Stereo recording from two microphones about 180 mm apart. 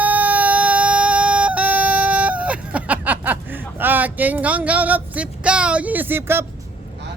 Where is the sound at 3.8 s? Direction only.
10° right (ahead or behind).